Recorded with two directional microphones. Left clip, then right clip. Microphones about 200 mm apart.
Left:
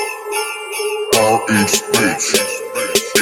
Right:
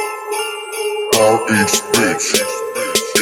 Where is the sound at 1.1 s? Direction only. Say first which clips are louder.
Right 1 dB; centre (ahead or behind).